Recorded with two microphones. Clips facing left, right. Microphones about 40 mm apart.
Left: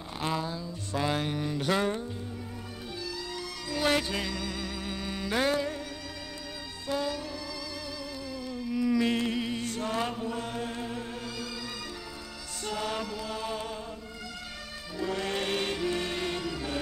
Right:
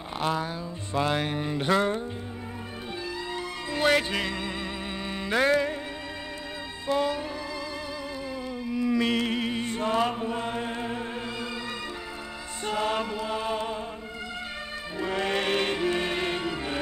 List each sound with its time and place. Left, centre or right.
0.4 s music: right
3.7 s music: right
6.9 s music: right
8.6 s music: right
9.0 s chant: right
12.6 s chant: right
15.0 s music: right